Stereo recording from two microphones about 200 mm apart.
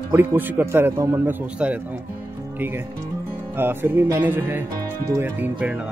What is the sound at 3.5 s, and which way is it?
Speech, 10° right (ahead or behind).